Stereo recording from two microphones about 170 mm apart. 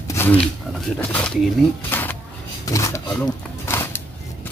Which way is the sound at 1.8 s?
10° left (ahead or behind).